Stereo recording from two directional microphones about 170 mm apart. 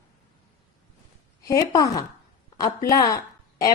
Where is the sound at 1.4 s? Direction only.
20° left (ahead or behind).